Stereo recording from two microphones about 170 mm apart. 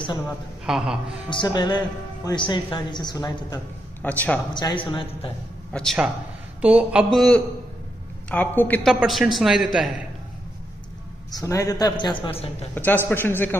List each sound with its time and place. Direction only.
0.7 s a man's voice: centre (ahead or behind)
1.3 s a woman's voice: 25° left (ahead or behind)
4.0 s speech: 10° left (ahead or behind)
4.6 s a woman's voice: 30° left (ahead or behind)
5.7 s speech: 5° left (ahead or behind)
6.6 s a man's voice: 5° right (ahead or behind); by 8.9 s 10° left (ahead or behind)
9.0 s a man's voice: centre (ahead or behind)
11.3 s a woman's voice: 20° left (ahead or behind)
12.7 s speech: 10° left (ahead or behind)